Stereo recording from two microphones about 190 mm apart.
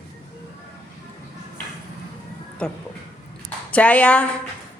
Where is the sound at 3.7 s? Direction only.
10° left (ahead or behind).